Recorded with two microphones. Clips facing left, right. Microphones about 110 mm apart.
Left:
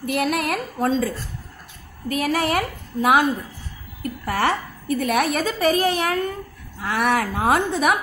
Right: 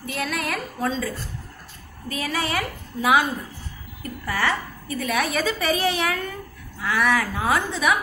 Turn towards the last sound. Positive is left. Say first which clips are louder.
# left 3 dB
turn(degrees=55)  # may be behind; listen again after turning